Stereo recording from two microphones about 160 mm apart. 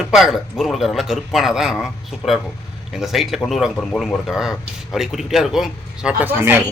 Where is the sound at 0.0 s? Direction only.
Centre (ahead or behind).